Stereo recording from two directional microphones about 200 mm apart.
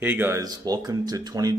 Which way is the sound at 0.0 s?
10° right (ahead or behind).